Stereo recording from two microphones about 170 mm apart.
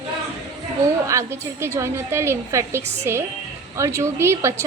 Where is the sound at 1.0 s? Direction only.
15° right (ahead or behind).